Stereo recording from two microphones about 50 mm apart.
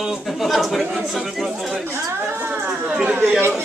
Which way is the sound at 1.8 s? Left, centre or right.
Right.